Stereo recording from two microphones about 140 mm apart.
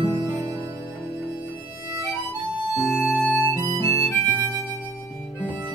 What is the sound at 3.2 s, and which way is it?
Music, 15° left (ahead or behind).